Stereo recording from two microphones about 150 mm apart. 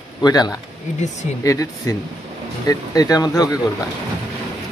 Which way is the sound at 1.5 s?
20° left (ahead or behind).